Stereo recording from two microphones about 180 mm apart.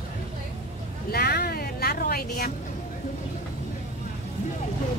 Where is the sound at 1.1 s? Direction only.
60° left (ahead or behind).